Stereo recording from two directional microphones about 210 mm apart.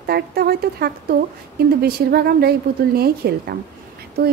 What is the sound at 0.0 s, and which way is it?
Speech, 45° right (ahead or behind).